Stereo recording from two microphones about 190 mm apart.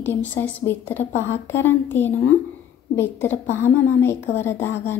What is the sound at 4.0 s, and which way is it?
Speech, 15° left (ahead or behind).